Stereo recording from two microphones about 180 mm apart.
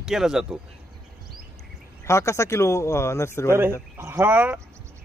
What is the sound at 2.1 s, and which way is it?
Speech, 15° left (ahead or behind).